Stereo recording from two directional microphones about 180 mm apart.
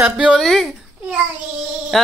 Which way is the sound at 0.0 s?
5° right (ahead or behind).